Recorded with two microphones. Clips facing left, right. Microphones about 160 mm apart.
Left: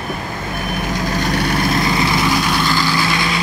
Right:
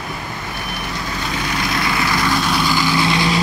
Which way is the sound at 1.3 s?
65° left (ahead or behind).